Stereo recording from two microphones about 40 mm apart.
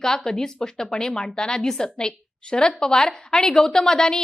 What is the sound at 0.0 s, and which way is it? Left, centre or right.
A woman's voice, centre.